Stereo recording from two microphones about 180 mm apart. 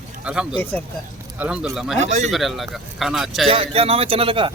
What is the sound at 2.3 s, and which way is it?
Speech, centre (ahead or behind).